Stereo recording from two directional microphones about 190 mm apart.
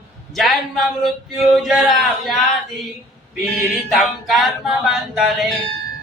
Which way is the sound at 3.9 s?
Centre (ahead or behind).